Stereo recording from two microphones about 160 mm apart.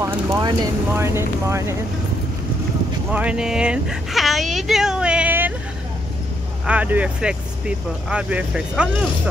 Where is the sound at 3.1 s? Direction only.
10° right (ahead or behind).